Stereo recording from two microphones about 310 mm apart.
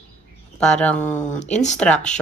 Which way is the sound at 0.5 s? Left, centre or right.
Centre.